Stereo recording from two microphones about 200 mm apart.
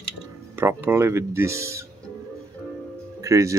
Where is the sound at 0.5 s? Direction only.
10° right (ahead or behind).